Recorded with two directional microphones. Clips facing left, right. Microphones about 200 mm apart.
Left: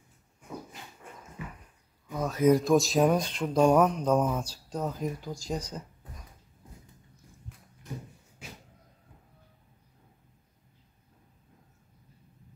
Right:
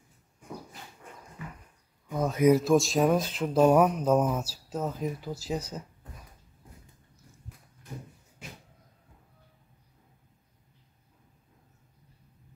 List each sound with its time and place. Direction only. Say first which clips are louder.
2.1 s speech: right 3 dB; 20° right (ahead or behind)
2.5 s speech: even; centre (ahead or behind)